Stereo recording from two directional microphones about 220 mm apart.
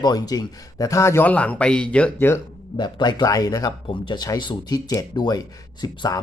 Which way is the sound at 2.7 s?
20° left (ahead or behind).